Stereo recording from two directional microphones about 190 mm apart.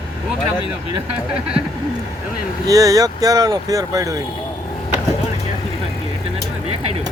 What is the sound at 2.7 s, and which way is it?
Speech, 20° right (ahead or behind).